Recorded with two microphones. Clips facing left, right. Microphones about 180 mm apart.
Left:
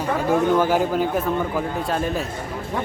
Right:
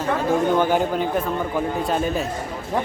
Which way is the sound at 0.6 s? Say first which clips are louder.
Even; 5° left (ahead or behind).